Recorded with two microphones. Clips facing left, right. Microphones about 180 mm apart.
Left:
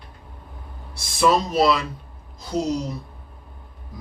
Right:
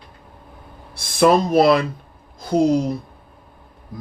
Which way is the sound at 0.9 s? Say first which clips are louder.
Right 4 dB; 55° right (ahead or behind).